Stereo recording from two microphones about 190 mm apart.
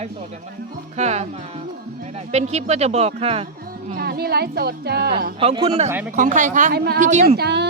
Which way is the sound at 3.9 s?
55° right (ahead or behind).